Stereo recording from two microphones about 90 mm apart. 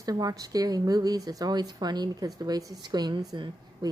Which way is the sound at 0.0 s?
40° right (ahead or behind).